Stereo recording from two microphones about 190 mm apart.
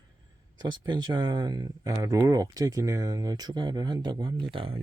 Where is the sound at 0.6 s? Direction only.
25° right (ahead or behind).